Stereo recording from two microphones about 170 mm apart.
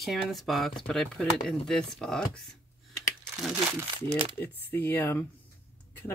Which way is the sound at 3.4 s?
5° right (ahead or behind).